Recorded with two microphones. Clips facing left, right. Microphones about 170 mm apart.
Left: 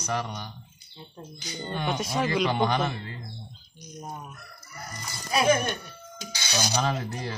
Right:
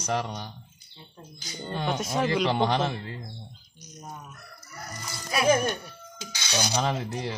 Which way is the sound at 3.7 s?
55° left (ahead or behind).